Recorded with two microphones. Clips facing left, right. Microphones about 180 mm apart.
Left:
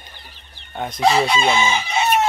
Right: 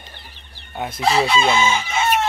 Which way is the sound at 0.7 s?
5° right (ahead or behind).